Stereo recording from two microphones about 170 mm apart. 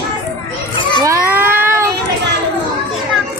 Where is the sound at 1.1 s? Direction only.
15° right (ahead or behind).